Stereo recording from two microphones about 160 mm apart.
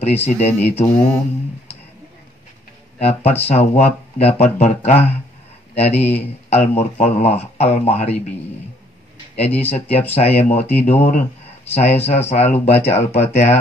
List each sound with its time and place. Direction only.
0.0 s speech: 40° left (ahead or behind)
3.0 s a man's voice: 40° left (ahead or behind)
9.4 s speech: 40° left (ahead or behind)